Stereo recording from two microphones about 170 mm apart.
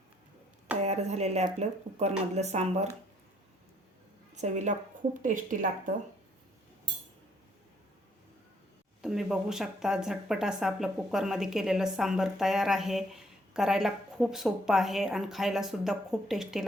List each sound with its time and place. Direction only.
0.8 s speech: 40° right (ahead or behind)
4.4 s speech: 45° right (ahead or behind)
9.0 s speech: centre (ahead or behind)